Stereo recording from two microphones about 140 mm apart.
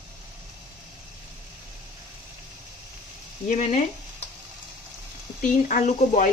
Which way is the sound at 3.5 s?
60° left (ahead or behind).